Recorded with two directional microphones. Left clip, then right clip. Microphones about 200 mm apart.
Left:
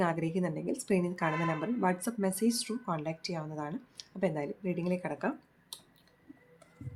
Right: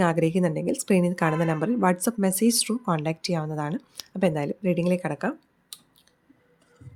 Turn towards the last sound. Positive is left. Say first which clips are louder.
# right 7 dB
turn(degrees=-35)  # may be behind; listen again after turning